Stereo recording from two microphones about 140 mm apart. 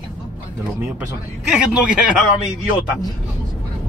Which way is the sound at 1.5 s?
5° right (ahead or behind).